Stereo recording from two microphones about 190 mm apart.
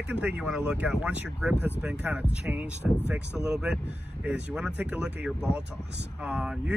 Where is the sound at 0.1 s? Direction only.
5° right (ahead or behind).